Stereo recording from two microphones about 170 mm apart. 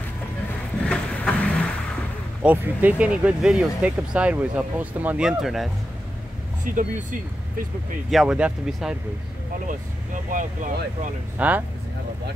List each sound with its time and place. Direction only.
0.8 s vehicle: 5° left (ahead or behind)
2.4 s speech: 10° right (ahead or behind)
6.6 s speech: 50° right (ahead or behind)
8.1 s speech: centre (ahead or behind)
9.7 s speech: 50° right (ahead or behind)
11.3 s speech: 10° right (ahead or behind)